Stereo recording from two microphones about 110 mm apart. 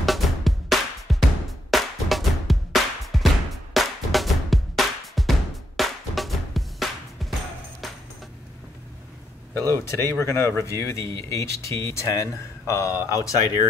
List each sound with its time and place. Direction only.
0.0 s music: centre (ahead or behind)
9.5 s speech: 25° left (ahead or behind)